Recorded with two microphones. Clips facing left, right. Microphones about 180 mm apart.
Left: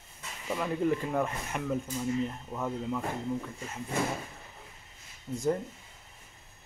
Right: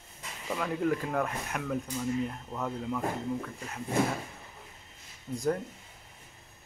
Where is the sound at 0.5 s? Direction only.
5° left (ahead or behind).